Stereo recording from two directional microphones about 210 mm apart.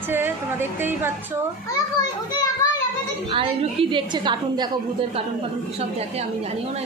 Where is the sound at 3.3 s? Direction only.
25° right (ahead or behind).